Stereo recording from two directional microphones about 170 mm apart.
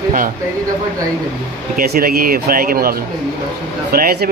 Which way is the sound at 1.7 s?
65° right (ahead or behind).